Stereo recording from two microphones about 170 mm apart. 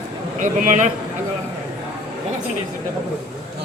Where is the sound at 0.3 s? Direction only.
50° right (ahead or behind).